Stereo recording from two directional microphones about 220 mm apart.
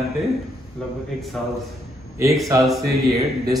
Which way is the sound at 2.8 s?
45° right (ahead or behind).